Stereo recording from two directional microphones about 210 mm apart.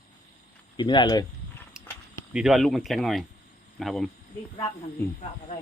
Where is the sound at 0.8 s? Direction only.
20° left (ahead or behind).